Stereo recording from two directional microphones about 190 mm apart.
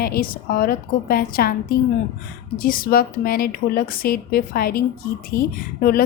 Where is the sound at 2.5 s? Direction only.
50° left (ahead or behind).